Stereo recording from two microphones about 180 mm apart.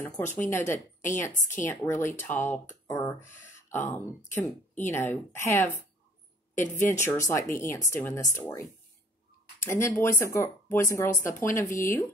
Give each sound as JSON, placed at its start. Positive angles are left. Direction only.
{"t": 0.4, "sound": "speech", "side_deg": 10}
{"t": 6.8, "sound": "speech", "side_deg": 15}